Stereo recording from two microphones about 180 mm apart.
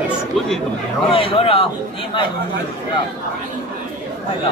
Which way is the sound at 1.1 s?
30° left (ahead or behind).